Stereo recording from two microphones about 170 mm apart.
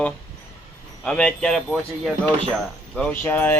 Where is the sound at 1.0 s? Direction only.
5° left (ahead or behind).